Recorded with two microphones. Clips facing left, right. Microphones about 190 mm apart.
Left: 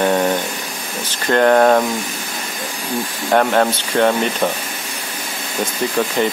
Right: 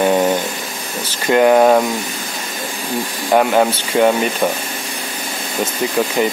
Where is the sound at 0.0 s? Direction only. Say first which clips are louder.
Right 2 dB; 10° right (ahead or behind).